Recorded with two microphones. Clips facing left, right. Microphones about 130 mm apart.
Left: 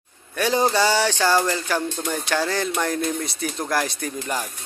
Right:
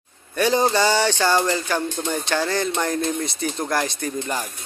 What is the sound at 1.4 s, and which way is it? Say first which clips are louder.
Speech: right 1 dB; 20° right (ahead or behind).